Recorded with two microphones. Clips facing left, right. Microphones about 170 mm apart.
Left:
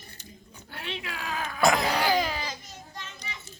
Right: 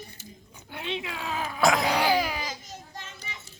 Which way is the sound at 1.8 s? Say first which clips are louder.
Right 1 dB; 15° right (ahead or behind).